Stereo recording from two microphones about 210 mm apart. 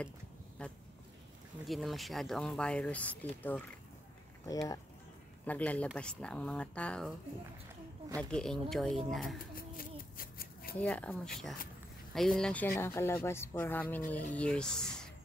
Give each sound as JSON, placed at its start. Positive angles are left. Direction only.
{"t": 0.6, "sound": "speech", "side_deg": 5}
{"t": 5.4, "sound": "speech", "side_deg": 5}
{"t": 8.2, "sound": "speech", "side_deg": 5}
{"t": 9.6, "sound": "a sound", "side_deg": 45}
{"t": 10.8, "sound": "speech", "side_deg": 5}